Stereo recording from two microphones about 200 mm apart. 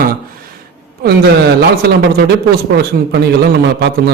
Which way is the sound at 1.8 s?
50° right (ahead or behind).